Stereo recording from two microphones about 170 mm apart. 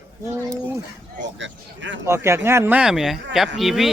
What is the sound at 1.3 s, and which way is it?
Speech, 90° right.